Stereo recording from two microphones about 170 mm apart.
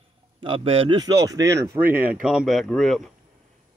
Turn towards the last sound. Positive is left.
turn(degrees=0)  # may be behind; listen again after turning